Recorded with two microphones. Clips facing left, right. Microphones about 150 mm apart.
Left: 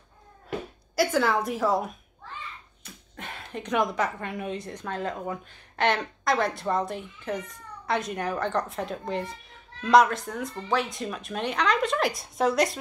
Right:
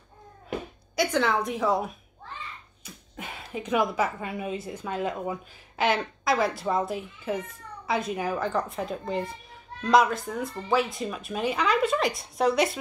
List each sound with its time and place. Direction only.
0.9 s a woman's voice: 5° left (ahead or behind)
3.2 s a woman's voice: 5° right (ahead or behind)